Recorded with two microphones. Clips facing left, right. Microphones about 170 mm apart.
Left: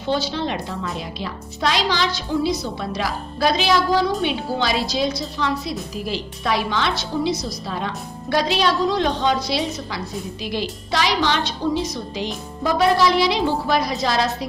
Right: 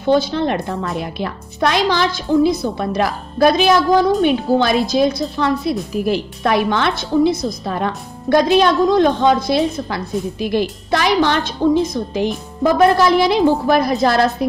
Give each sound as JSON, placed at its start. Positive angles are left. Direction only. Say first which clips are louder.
{"t": 0.0, "sound": "a woman's voice", "louder": "right 7 dB", "side_deg": -50}